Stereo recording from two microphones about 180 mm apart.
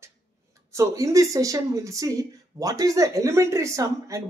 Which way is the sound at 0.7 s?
15° right (ahead or behind).